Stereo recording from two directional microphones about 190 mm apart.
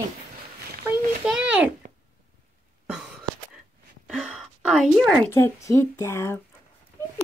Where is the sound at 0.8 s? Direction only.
5° right (ahead or behind).